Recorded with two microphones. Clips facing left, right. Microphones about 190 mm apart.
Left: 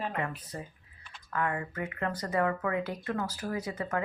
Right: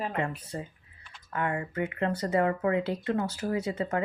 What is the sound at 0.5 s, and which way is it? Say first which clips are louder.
A woman's voice: right 4 dB; 30° right (ahead or behind).